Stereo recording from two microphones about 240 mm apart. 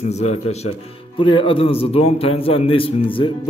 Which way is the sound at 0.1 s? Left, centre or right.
Left.